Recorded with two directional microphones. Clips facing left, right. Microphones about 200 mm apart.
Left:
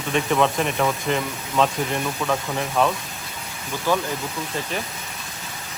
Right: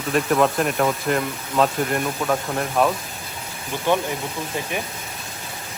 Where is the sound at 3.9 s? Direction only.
20° right (ahead or behind).